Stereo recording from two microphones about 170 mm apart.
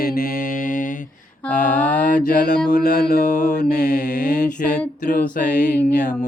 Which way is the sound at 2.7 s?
70° left (ahead or behind).